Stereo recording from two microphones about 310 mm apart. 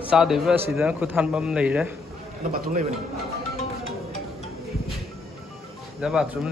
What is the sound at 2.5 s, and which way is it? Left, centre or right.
Speech, right.